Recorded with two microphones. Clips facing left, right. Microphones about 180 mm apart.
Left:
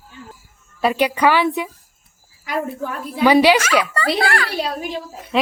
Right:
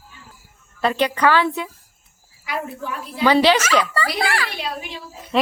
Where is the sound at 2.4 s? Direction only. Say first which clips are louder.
Left 4 dB; 45° left (ahead or behind).